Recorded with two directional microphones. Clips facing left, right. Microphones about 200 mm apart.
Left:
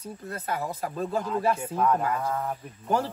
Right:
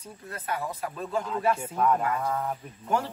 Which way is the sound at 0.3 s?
40° left (ahead or behind).